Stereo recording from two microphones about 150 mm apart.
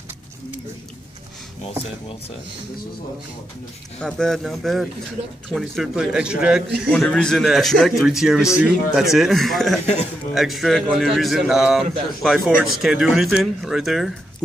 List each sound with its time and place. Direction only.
4.0 s a man's voice: centre (ahead or behind)
6.9 s a man's voice: 5° left (ahead or behind)